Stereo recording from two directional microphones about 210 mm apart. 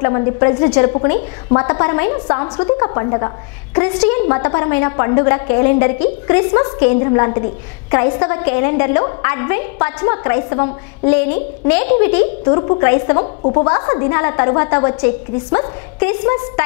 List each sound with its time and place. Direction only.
0.0 s a woman's voice: 20° left (ahead or behind)
12.4 s a woman's voice: 20° left (ahead or behind)
13.2 s a woman's voice: 30° left (ahead or behind); by 16.6 s 15° left (ahead or behind)